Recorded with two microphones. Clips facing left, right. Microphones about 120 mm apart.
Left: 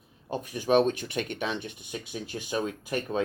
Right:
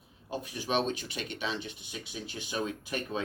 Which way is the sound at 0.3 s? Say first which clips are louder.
Left 8 dB; 50° left (ahead or behind).